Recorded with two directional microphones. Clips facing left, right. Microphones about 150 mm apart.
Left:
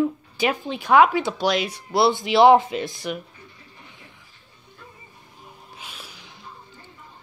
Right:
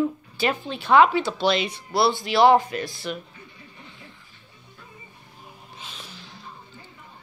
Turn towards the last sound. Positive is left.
turn(degrees=15)  # may be behind; listen again after turning